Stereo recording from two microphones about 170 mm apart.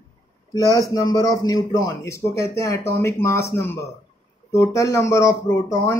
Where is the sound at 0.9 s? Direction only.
20° left (ahead or behind).